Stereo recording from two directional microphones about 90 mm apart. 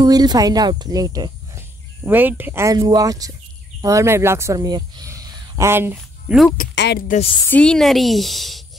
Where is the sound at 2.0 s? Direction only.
20° right (ahead or behind).